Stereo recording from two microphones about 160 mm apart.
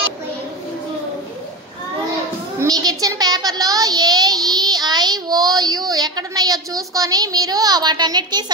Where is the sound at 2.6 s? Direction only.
25° right (ahead or behind).